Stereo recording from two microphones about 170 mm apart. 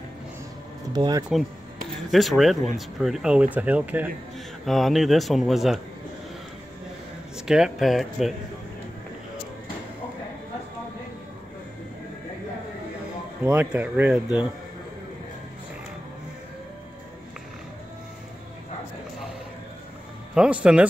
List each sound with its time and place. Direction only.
0.9 s speech: 25° right (ahead or behind)
2.0 s speech: centre (ahead or behind)
7.3 s speech: 5° right (ahead or behind)
13.4 s speech: 5° right (ahead or behind)
20.3 s speech: 5° right (ahead or behind)